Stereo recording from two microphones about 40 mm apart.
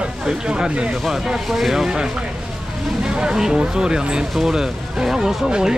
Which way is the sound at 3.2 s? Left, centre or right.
Centre.